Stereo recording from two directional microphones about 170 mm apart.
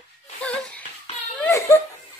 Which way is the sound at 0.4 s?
5° left (ahead or behind).